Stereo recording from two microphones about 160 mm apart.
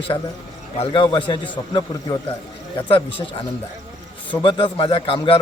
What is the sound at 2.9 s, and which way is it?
Speech, 35° left (ahead or behind).